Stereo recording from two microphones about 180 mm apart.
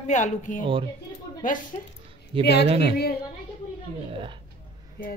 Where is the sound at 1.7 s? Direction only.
45° left (ahead or behind).